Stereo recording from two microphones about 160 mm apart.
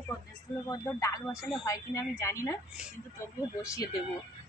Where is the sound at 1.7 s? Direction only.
20° left (ahead or behind).